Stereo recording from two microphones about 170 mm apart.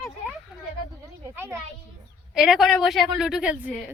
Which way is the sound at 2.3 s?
5° right (ahead or behind).